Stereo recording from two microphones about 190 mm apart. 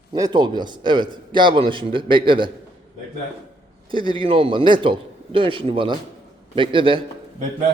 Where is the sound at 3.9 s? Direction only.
25° right (ahead or behind).